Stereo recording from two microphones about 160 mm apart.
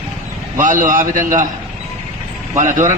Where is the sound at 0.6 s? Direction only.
55° right (ahead or behind).